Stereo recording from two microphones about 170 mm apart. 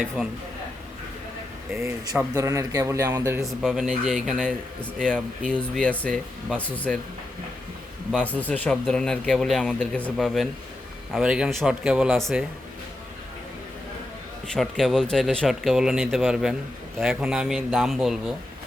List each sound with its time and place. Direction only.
1.7 s speech: 15° right (ahead or behind)
3.4 s a man's voice: centre (ahead or behind)
8.1 s a man's voice: 10° left (ahead or behind)
14.4 s a man's voice: 5° left (ahead or behind)